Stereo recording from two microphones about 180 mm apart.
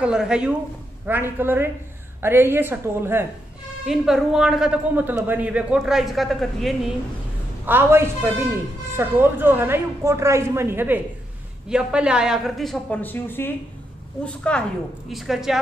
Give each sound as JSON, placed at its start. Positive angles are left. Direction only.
{"t": 0.0, "sound": "a man's voice", "side_deg": -5}
{"t": 7.6, "sound": "a man's voice", "side_deg": -10}